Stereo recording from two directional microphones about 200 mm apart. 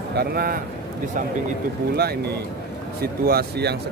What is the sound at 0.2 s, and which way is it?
Speech, 50° right (ahead or behind).